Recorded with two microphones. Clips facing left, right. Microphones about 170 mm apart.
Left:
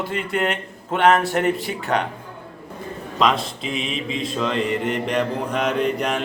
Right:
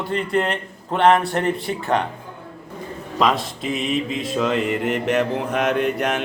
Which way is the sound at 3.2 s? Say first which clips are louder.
Even; centre (ahead or behind).